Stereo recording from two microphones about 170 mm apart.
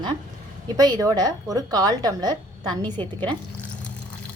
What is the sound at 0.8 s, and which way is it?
Speech, 20° right (ahead or behind).